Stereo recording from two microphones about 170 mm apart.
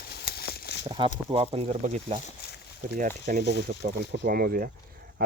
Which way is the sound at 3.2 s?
70° right (ahead or behind).